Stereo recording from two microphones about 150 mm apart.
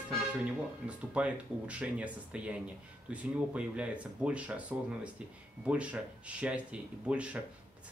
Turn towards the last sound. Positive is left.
turn(degrees=-10)  # may be behind; listen again after turning